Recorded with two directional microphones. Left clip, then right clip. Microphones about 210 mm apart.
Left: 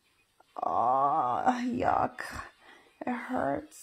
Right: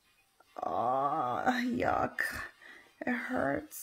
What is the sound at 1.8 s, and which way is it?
Speech, 10° left (ahead or behind).